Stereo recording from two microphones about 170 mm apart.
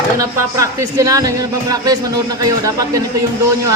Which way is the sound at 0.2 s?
15° right (ahead or behind).